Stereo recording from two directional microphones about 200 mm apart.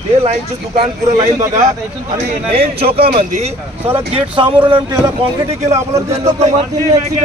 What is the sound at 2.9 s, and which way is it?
Speech, 30° right (ahead or behind).